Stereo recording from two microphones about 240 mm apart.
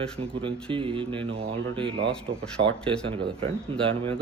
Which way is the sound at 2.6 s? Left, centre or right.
Right.